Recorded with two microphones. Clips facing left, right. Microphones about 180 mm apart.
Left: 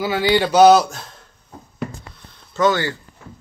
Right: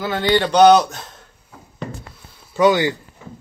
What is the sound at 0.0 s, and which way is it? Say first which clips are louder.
A man's voice: left 1 dB; 5° left (ahead or behind).